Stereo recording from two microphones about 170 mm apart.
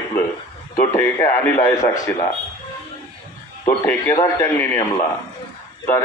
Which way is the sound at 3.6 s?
15° left (ahead or behind).